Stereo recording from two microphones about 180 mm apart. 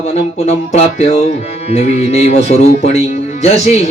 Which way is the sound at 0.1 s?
35° left (ahead or behind).